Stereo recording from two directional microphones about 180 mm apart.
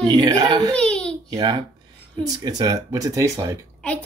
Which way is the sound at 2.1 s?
20° right (ahead or behind).